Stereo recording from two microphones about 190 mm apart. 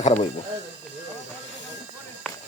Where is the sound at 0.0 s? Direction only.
35° left (ahead or behind).